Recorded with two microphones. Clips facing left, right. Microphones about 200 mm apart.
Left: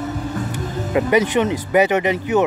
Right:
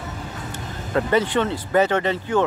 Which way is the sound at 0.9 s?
15° left (ahead or behind).